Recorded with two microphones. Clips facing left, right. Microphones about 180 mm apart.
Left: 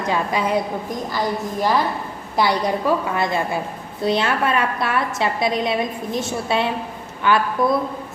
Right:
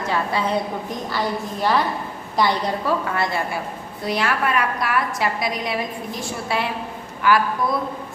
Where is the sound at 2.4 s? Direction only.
15° left (ahead or behind).